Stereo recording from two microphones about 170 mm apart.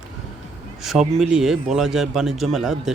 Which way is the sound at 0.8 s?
Centre (ahead or behind).